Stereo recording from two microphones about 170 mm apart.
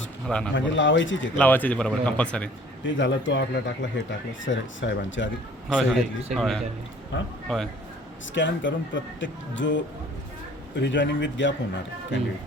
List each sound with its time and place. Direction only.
0.3 s a man's voice: 5° left (ahead or behind)
0.5 s speech: 90° left
1.4 s speech: 10° left (ahead or behind)
2.8 s speech: 90° left
5.6 s a man's voice: centre (ahead or behind)
8.3 s speech: 90° left